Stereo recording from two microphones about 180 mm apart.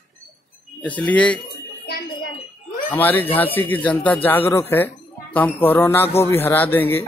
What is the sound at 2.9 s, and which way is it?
Speech, 10° left (ahead or behind).